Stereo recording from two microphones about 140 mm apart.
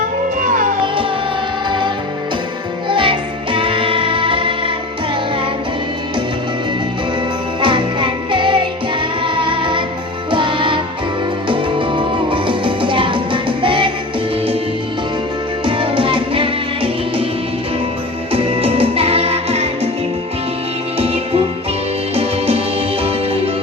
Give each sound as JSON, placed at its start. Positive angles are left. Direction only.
{"t": 0.4, "sound": "music", "side_deg": -70}
{"t": 2.9, "sound": "music", "side_deg": -35}
{"t": 7.6, "sound": "music", "side_deg": -35}
{"t": 15.6, "sound": "music", "side_deg": -35}
{"t": 18.3, "sound": "music", "side_deg": -40}
{"t": 21.0, "sound": "music", "side_deg": -45}